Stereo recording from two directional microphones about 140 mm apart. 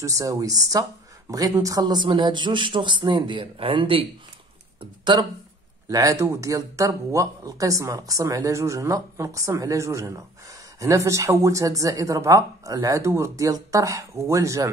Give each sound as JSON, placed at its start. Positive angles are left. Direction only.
{"t": 0.0, "sound": "speech", "side_deg": -25}